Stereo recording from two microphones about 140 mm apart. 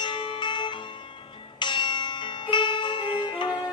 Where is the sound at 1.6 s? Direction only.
35° left (ahead or behind).